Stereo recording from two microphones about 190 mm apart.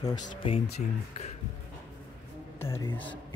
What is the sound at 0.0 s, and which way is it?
Speech, 25° left (ahead or behind).